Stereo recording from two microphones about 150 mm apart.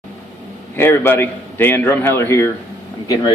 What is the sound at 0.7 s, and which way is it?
A man's voice, 15° left (ahead or behind).